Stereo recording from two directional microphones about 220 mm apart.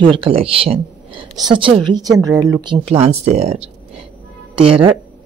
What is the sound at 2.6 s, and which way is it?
Speech, 25° right (ahead or behind).